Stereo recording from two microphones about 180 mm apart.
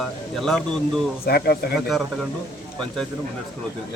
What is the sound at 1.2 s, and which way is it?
Speech, 60° left (ahead or behind).